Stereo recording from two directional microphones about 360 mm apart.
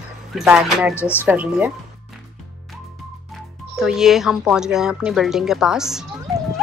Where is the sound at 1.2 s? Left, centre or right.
Centre.